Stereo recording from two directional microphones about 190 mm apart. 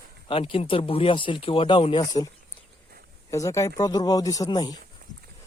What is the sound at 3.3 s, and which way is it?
Speech, 15° left (ahead or behind).